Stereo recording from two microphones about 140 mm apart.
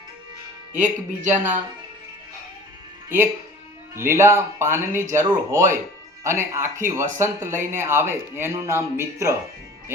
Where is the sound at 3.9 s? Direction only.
20° right (ahead or behind).